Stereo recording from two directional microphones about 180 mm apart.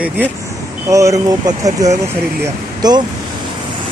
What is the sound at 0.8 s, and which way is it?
Speech, 15° right (ahead or behind).